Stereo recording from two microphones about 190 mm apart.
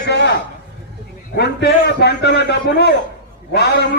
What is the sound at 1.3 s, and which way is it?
A man's voice, 60° left (ahead or behind).